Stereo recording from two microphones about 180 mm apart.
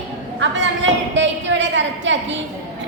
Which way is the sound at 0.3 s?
90° right.